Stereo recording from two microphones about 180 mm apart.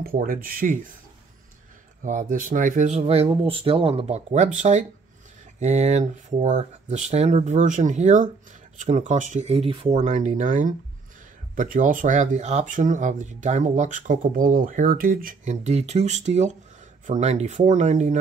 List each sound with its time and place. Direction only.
0.0 s speech: 50° right (ahead or behind)
2.0 s speech: 45° right (ahead or behind)